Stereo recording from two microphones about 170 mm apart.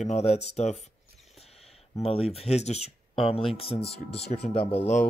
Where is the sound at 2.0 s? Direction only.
35° left (ahead or behind).